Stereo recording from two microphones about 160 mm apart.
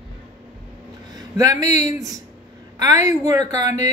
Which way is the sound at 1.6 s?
25° right (ahead or behind).